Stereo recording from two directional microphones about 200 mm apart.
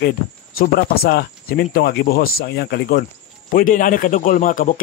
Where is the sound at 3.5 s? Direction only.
40° left (ahead or behind).